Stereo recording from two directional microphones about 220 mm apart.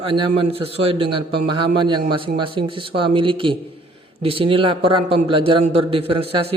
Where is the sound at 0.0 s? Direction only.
25° right (ahead or behind).